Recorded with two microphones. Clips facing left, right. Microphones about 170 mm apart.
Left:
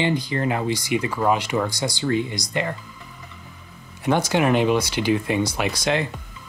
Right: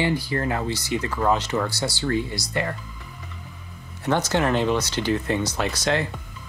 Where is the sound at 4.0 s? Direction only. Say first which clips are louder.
Left 2 dB; 10° left (ahead or behind).